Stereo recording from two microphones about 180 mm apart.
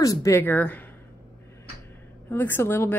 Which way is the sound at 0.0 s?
20° left (ahead or behind).